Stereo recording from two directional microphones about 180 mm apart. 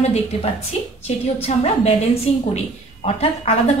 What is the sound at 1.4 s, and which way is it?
Speech, 35° left (ahead or behind).